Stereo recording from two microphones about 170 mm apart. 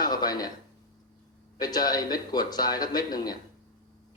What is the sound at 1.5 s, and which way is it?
Speech, 25° left (ahead or behind).